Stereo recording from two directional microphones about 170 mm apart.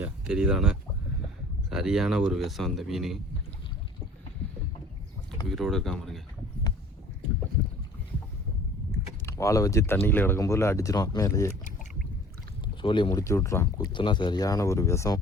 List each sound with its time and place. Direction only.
0.0 s speech: 5° right (ahead or behind)
5.5 s speech: centre (ahead or behind)
9.2 s speech: 15° left (ahead or behind)
12.6 s rowboat: 30° left (ahead or behind)
13.1 s speech: 15° left (ahead or behind)